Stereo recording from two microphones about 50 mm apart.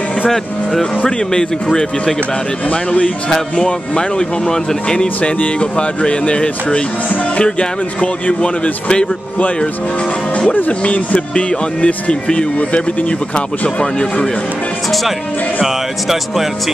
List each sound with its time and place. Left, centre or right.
1.0 s speech: centre
2.7 s speech: left
10.7 s speech: left
15.6 s speech: centre